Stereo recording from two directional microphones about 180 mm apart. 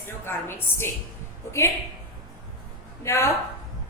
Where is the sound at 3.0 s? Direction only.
15° left (ahead or behind).